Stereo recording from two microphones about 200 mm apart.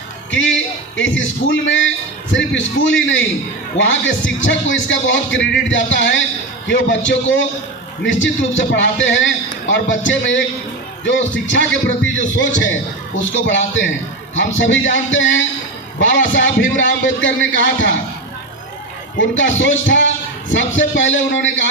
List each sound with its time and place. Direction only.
0.3 s a man's voice: 70° left (ahead or behind)
19.1 s a man's voice: 70° left (ahead or behind)